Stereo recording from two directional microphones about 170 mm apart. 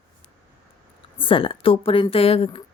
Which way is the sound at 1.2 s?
30° left (ahead or behind).